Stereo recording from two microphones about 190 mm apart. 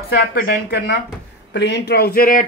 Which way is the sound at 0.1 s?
50° left (ahead or behind).